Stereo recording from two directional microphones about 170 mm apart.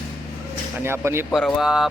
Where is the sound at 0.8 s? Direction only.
15° right (ahead or behind).